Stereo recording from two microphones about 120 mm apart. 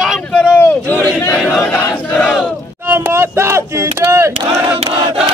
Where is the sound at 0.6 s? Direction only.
15° left (ahead or behind).